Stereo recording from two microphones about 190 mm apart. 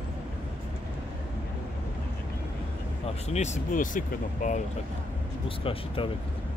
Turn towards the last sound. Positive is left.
turn(degrees=30)  # may be behind; listen again after turning